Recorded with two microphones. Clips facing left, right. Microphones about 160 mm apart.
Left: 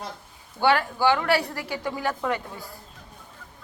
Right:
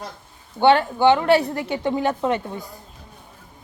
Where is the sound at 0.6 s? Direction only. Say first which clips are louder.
Right 6 dB; 25° right (ahead or behind).